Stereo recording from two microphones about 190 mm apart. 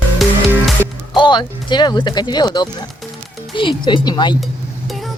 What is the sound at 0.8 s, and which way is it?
Speech, 15° right (ahead or behind).